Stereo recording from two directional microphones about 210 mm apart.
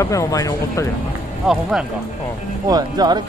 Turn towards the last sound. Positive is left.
turn(degrees=-20)  # may be behind; listen again after turning